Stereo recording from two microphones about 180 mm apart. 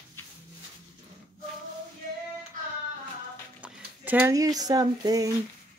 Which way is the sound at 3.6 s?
10° right (ahead or behind).